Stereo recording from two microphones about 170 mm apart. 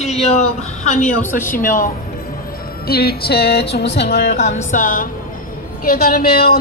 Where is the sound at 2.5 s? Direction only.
65° left (ahead or behind); by 4.3 s 85° left.